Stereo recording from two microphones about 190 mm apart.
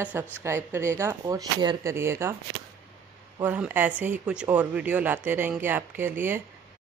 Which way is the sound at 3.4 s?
10° right (ahead or behind).